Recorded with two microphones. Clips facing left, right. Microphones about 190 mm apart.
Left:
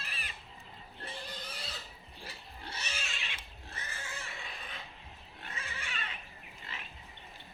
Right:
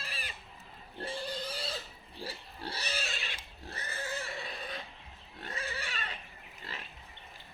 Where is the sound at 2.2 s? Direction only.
35° right (ahead or behind).